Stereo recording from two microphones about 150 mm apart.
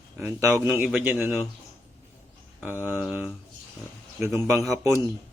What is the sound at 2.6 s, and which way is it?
Speech, 15° right (ahead or behind).